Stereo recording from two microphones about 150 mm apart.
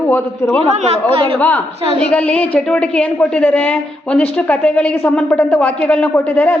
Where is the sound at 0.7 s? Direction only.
45° right (ahead or behind).